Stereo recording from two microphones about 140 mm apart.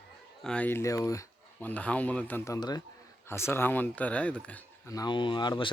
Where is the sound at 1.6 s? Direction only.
10° left (ahead or behind); by 2.8 s 30° left (ahead or behind).